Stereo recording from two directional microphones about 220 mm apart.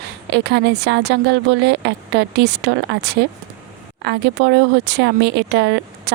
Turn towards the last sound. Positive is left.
turn(degrees=-50)  # may be behind; listen again after turning